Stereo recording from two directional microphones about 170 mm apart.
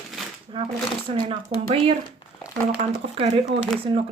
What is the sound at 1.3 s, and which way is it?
Speech, 35° right (ahead or behind).